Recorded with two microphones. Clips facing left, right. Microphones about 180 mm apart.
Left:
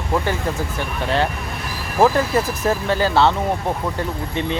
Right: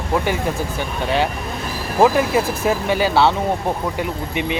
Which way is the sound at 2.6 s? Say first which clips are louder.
Right 1 dB; 10° right (ahead or behind).